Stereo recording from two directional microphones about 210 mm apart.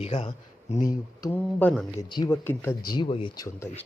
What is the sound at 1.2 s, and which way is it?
Speech, 15° left (ahead or behind).